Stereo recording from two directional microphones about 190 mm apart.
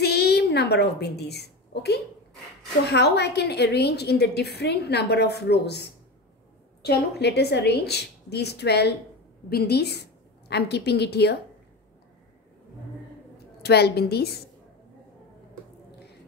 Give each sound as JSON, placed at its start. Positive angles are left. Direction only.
{"t": 0.0, "sound": "a sound", "side_deg": 60}
{"t": 2.9, "sound": "a woman's voice", "side_deg": 60}
{"t": 13.6, "sound": "a woman's voice", "side_deg": 60}